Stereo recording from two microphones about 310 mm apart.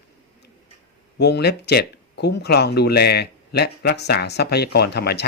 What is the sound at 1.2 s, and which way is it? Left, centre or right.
Speech, left.